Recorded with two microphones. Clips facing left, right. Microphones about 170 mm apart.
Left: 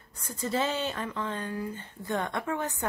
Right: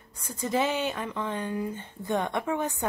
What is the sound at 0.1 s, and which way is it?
Speech, 15° right (ahead or behind).